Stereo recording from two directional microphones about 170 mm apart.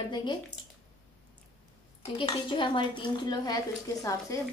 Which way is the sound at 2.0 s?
30° left (ahead or behind).